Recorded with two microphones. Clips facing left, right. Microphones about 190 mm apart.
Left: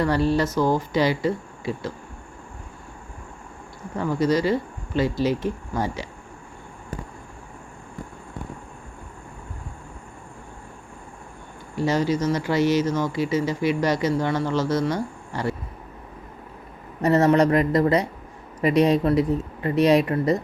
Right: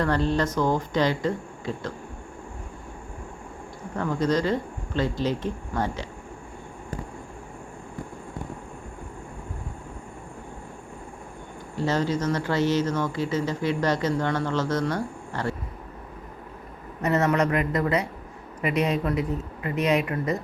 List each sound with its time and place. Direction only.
0.0 s speech: 10° left (ahead or behind)
3.9 s speech: 10° left (ahead or behind)
11.8 s speech: 10° left (ahead or behind)
17.0 s speech: 35° left (ahead or behind)